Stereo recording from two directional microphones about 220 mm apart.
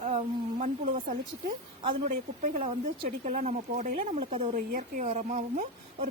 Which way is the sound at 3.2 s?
35° right (ahead or behind).